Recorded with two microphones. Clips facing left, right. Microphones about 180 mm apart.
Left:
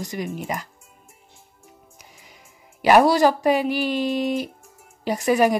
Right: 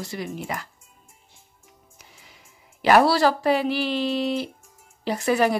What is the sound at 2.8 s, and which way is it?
Speech, 15° left (ahead or behind).